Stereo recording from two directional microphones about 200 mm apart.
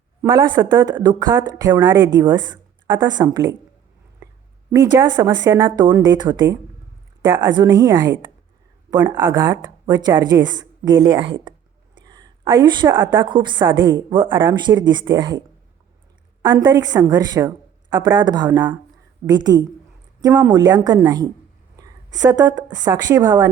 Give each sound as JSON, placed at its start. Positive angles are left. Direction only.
{"t": 0.2, "sound": "speech", "side_deg": -15}
{"t": 4.7, "sound": "a woman's voice", "side_deg": -20}
{"t": 16.4, "sound": "a woman's voice", "side_deg": -20}